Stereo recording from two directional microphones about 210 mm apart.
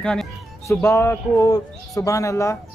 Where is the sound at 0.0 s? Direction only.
5° left (ahead or behind).